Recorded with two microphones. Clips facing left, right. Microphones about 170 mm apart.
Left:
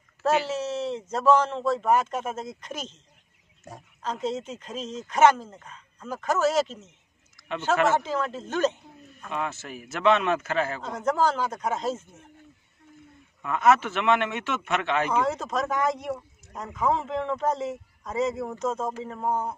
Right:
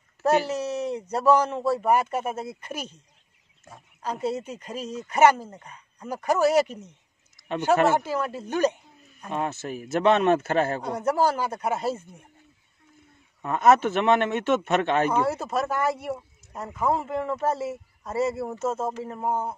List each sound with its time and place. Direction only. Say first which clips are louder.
0.2 s speech: right 2 dB; 10° right (ahead or behind)
4.0 s speech: right 1 dB; 10° right (ahead or behind)
7.9 s speech: right 1 dB; 10° right (ahead or behind)
9.7 s a man's voice: right 2 dB; 40° right (ahead or behind)
10.8 s speech: right 1 dB; 10° right (ahead or behind)
13.4 s speech: right 2 dB; 40° right (ahead or behind)
15.2 s speech: right 1 dB; 10° right (ahead or behind)